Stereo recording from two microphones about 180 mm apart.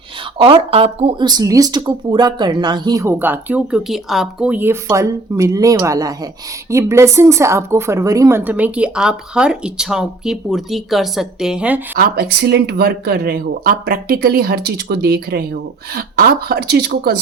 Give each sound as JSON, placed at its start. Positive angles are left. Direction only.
{"t": 0.3, "sound": "speech", "side_deg": -30}
{"t": 11.9, "sound": "speech", "side_deg": -60}